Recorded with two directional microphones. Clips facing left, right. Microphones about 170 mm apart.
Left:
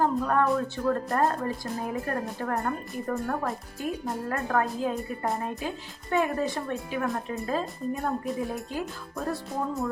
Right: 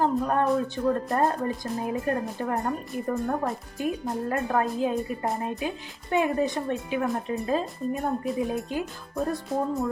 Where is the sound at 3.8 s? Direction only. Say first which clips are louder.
Right 3 dB; 20° right (ahead or behind).